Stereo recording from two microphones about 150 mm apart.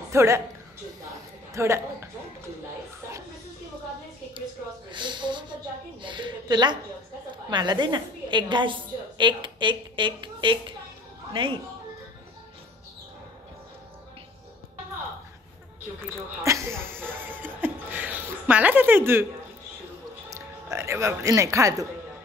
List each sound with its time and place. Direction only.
0.1 s speech: 20° right (ahead or behind)
1.5 s speech: 20° right (ahead or behind)
4.9 s a woman's voice: 30° right (ahead or behind)
16.0 s speech: 20° right (ahead or behind)
17.1 s laughter: 10° right (ahead or behind)
20.2 s speech: 20° right (ahead or behind)